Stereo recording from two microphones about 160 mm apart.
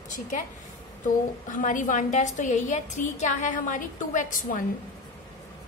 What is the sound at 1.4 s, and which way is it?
A woman's voice, 55° left (ahead or behind).